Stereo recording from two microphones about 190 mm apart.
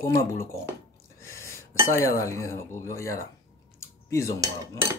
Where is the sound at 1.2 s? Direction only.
15° left (ahead or behind).